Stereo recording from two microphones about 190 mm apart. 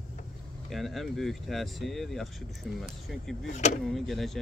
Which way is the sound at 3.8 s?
Centre (ahead or behind).